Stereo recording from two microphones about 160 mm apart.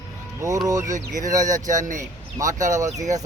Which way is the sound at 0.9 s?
55° right (ahead or behind).